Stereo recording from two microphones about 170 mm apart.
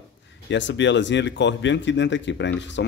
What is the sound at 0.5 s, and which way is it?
Speech, 90° left.